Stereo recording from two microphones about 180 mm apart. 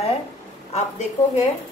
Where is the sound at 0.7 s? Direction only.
40° left (ahead or behind).